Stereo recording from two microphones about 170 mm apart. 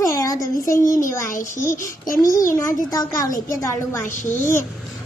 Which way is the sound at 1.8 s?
50° left (ahead or behind).